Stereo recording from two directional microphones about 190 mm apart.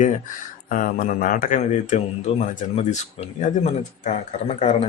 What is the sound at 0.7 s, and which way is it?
Speech, 45° left (ahead or behind).